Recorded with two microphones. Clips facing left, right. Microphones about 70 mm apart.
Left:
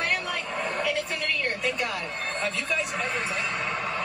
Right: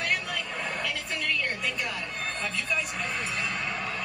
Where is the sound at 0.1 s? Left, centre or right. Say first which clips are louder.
Left 2 dB; centre.